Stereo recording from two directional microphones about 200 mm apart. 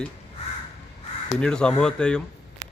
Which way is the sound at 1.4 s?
5° left (ahead or behind).